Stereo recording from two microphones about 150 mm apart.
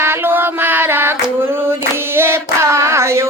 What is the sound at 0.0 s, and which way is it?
Female singing, 15° right (ahead or behind).